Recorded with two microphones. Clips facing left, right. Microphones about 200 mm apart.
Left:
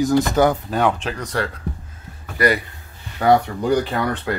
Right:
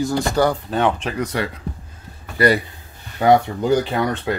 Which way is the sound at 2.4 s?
30° right (ahead or behind).